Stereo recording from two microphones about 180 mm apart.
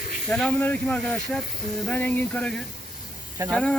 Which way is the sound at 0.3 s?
5° left (ahead or behind).